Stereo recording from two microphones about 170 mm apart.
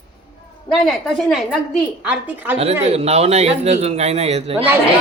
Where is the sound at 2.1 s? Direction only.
10° right (ahead or behind).